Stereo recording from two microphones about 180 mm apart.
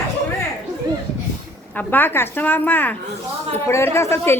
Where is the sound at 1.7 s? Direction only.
10° left (ahead or behind).